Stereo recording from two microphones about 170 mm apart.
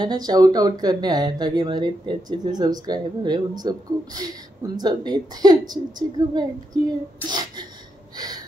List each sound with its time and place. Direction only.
0.0 s speech: 25° right (ahead or behind)